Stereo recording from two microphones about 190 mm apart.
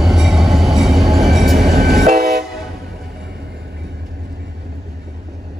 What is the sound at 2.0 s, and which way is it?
Train, 55° right (ahead or behind).